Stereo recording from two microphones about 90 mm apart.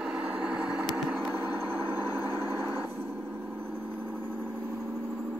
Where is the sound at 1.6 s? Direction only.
25° right (ahead or behind).